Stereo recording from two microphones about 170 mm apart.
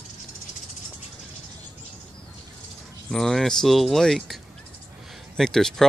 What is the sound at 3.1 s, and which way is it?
Speech, 5° left (ahead or behind).